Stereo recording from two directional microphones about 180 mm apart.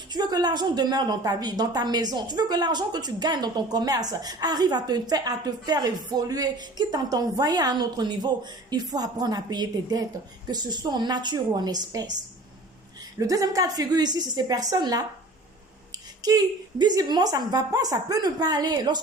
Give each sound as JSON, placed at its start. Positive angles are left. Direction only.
{"t": 0.1, "sound": "a woman's voice", "side_deg": -25}
{"t": 13.1, "sound": "a woman's voice", "side_deg": -20}
{"t": 16.2, "sound": "a woman's voice", "side_deg": -20}